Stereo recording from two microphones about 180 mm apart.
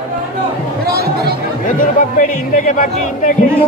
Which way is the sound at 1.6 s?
45° left (ahead or behind).